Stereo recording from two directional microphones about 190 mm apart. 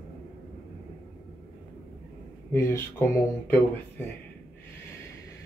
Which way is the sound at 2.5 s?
10° left (ahead or behind).